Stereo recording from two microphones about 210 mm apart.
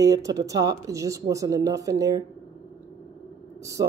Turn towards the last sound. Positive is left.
turn(degrees=-15)  # may be behind; listen again after turning